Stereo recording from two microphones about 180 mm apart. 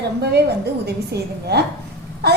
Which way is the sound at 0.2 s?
65° right (ahead or behind).